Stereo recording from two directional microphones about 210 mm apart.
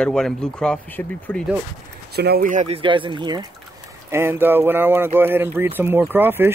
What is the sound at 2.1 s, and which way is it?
Speech, 50° right (ahead or behind).